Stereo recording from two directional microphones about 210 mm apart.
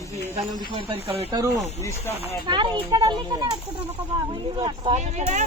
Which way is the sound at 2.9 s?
20° right (ahead or behind).